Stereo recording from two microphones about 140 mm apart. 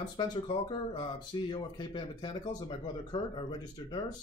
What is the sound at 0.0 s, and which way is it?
Speech, 30° left (ahead or behind).